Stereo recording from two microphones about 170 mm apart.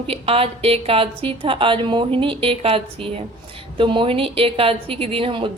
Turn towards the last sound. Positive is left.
turn(degrees=-30)  # may be behind; listen again after turning